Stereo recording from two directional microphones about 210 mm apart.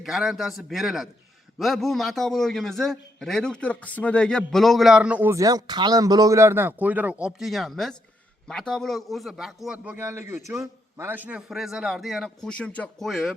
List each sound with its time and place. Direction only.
0.0 s a man's voice: centre (ahead or behind)